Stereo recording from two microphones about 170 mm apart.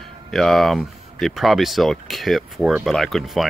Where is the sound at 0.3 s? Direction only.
Centre (ahead or behind).